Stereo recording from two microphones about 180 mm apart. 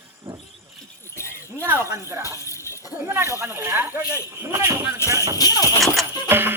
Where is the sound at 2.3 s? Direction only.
15° left (ahead or behind).